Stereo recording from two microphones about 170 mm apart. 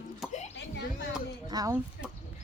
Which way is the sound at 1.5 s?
20° right (ahead or behind).